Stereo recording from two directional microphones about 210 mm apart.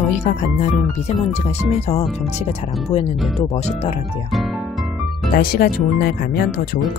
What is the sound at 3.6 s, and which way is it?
Speech, 30° left (ahead or behind).